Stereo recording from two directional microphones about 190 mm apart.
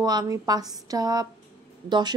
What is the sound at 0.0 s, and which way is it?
A woman's voice, 20° right (ahead or behind).